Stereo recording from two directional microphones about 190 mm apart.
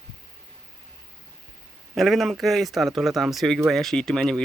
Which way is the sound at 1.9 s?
Centre (ahead or behind).